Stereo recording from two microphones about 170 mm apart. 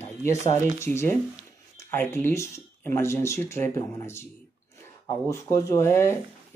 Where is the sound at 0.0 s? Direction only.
15° left (ahead or behind).